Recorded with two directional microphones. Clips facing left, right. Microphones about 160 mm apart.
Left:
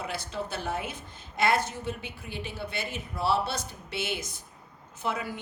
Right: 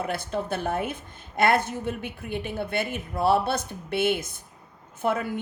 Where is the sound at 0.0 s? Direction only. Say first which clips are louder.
Right 5 dB; 55° right (ahead or behind).